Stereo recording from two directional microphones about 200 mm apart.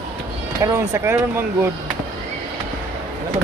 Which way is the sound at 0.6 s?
15° right (ahead or behind).